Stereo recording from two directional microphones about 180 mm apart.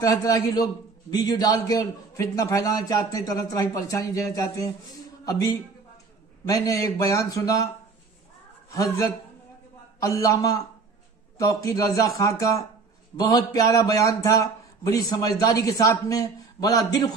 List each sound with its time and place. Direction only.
0.0 s a man's voice: 20° left (ahead or behind)
8.6 s a man's voice: 20° left (ahead or behind)